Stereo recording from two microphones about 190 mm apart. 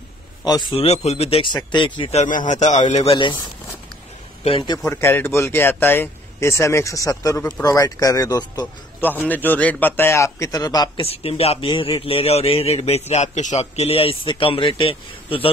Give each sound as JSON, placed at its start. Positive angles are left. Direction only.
{"t": 0.5, "sound": "a man's voice", "side_deg": 25}
{"t": 2.0, "sound": "speech", "side_deg": 40}
{"t": 4.5, "sound": "a man's voice", "side_deg": 25}
{"t": 4.8, "sound": "speech", "side_deg": 10}
{"t": 9.0, "sound": "a man's voice", "side_deg": 10}